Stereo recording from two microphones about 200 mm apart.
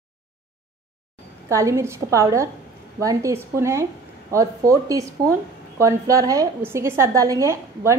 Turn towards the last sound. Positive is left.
turn(degrees=-15)  # may be behind; listen again after turning